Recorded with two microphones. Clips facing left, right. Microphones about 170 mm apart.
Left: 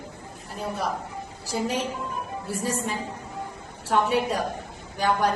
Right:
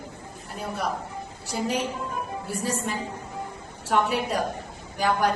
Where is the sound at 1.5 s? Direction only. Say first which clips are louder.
Even; centre (ahead or behind).